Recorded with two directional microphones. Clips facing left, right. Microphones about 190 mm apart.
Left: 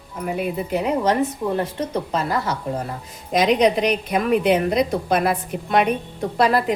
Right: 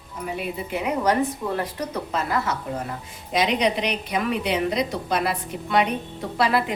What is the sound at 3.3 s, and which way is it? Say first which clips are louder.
A woman's voice: left 5 dB; 45° left (ahead or behind).